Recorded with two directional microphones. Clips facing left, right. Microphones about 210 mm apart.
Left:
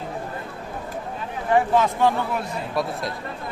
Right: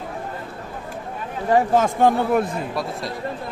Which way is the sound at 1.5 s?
40° right (ahead or behind).